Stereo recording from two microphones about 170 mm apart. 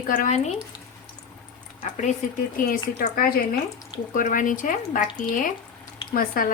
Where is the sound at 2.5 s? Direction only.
55° left (ahead or behind).